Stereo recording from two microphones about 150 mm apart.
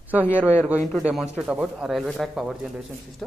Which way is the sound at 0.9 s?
Centre (ahead or behind).